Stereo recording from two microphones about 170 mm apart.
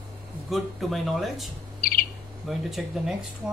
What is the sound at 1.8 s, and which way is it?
Bird, 60° left (ahead or behind).